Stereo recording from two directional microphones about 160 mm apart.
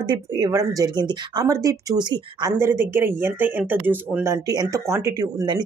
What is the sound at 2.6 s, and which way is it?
Speech, 15° right (ahead or behind).